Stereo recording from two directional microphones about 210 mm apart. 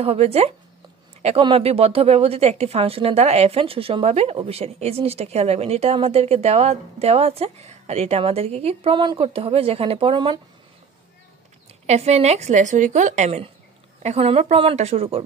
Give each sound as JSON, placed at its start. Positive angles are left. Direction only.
{"t": 0.0, "sound": "a woman's voice", "side_deg": -30}
{"t": 11.8, "sound": "a woman's voice", "side_deg": -30}